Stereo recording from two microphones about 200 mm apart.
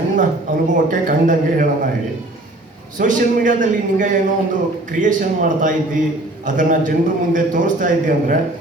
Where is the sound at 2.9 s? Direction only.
40° right (ahead or behind).